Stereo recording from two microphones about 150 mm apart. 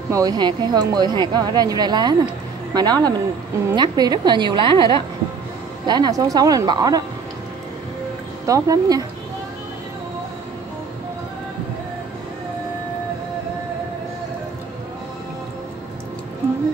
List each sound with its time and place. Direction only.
0.1 s a woman's voice: 25° right (ahead or behind)
8.5 s a woman's voice: 20° right (ahead or behind)